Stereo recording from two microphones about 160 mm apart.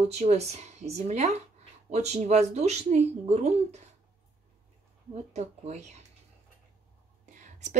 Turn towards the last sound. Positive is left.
turn(degrees=-55)  # may be behind; listen again after turning